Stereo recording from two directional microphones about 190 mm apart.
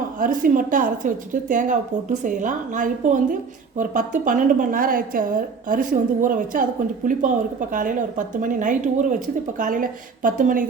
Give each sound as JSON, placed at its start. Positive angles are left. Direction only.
{"t": 0.2, "sound": "a woman's voice", "side_deg": -45}
{"t": 7.7, "sound": "a woman's voice", "side_deg": -45}